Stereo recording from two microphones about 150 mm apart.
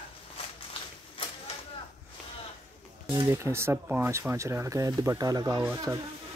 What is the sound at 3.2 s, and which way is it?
Speech, 15° right (ahead or behind).